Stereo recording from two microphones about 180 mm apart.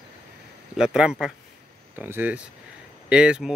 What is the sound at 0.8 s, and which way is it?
Speech, 5° right (ahead or behind).